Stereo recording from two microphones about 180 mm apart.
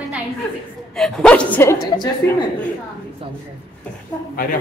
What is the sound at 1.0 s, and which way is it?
A woman's voice, 5° left (ahead or behind).